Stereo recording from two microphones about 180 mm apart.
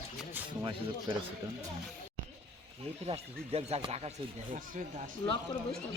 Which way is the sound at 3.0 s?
35° right (ahead or behind).